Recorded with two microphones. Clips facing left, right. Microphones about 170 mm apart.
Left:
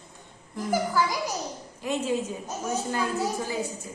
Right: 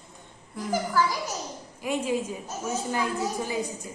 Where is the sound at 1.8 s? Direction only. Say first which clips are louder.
Even; 10° right (ahead or behind).